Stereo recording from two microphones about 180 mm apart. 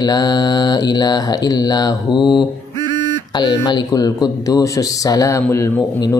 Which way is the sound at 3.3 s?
25° left (ahead or behind).